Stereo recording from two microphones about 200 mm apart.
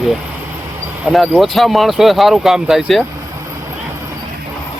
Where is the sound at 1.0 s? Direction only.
Centre (ahead or behind).